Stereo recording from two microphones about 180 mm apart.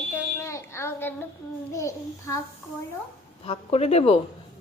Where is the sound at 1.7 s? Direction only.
15° left (ahead or behind).